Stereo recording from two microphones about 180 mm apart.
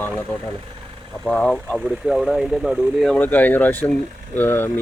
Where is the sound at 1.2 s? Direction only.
5° left (ahead or behind).